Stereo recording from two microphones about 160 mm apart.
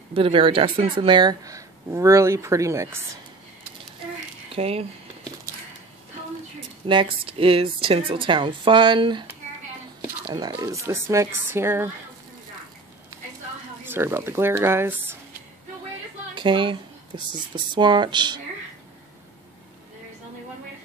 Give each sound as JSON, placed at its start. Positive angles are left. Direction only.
{"t": 0.1, "sound": "speech", "side_deg": -35}
{"t": 4.6, "sound": "speech", "side_deg": -40}
{"t": 6.9, "sound": "speech", "side_deg": -30}
{"t": 10.3, "sound": "speech", "side_deg": -25}
{"t": 13.8, "sound": "speech", "side_deg": -15}
{"t": 16.3, "sound": "speech", "side_deg": -30}